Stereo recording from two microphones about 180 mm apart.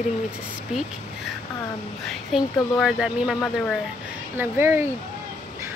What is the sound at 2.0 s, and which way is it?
Speech, centre (ahead or behind).